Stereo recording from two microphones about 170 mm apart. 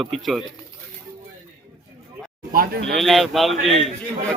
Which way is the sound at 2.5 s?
60° right (ahead or behind).